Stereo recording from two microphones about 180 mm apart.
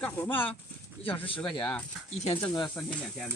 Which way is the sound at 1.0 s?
30° left (ahead or behind).